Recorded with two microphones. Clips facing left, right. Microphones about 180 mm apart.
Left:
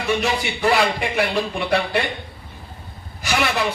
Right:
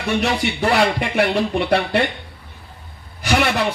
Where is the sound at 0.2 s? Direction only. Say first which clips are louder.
Right 2 dB; 60° right (ahead or behind).